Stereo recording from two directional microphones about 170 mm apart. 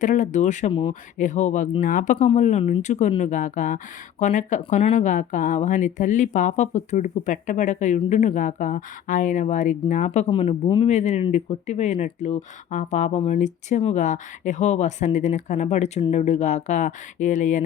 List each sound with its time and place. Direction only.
0.0 s speech: 45° left (ahead or behind)
0.7 s speech: 30° left (ahead or behind)
1.2 s speech: 45° left (ahead or behind)
10.2 s speech: 30° left (ahead or behind)